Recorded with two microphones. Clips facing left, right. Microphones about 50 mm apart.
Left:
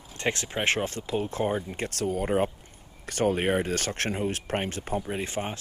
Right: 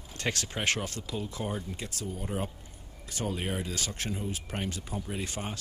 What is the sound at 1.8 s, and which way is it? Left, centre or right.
Speech, left.